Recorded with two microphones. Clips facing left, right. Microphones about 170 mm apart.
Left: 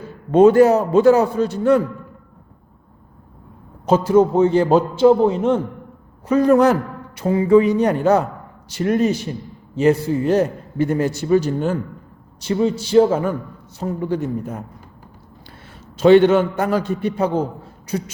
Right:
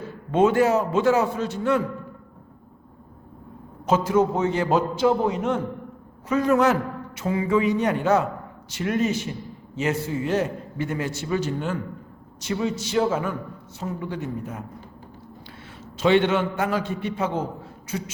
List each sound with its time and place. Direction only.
0.3 s a man's voice: 40° left (ahead or behind)
3.8 s a man's voice: 30° left (ahead or behind)
16.0 s a man's voice: 40° left (ahead or behind)